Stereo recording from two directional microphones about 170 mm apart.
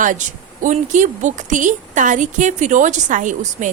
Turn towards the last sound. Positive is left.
turn(degrees=-45)  # may be behind; listen again after turning